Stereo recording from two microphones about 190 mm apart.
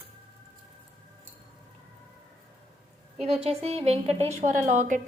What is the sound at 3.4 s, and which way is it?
Speech, 35° right (ahead or behind).